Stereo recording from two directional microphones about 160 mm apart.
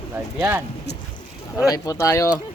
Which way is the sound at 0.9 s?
90° left.